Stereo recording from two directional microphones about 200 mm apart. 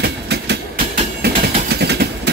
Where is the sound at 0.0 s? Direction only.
55° right (ahead or behind).